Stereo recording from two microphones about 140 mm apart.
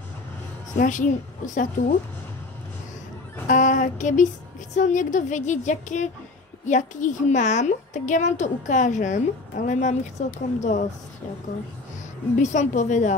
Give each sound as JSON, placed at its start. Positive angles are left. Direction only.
{"t": 0.7, "sound": "a woman's voice", "side_deg": 65}
{"t": 3.4, "sound": "a sound", "side_deg": 65}
{"t": 4.7, "sound": "a woman's voice", "side_deg": 60}
{"t": 12.4, "sound": "a woman's voice", "side_deg": 60}